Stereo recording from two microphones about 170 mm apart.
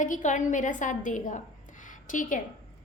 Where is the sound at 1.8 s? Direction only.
50° left (ahead or behind).